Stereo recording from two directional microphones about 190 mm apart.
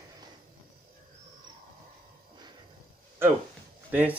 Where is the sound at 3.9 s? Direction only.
10° right (ahead or behind).